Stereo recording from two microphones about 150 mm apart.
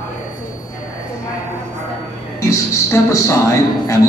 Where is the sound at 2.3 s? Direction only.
20° left (ahead or behind).